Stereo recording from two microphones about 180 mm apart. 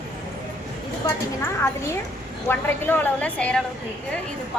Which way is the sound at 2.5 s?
10° left (ahead or behind).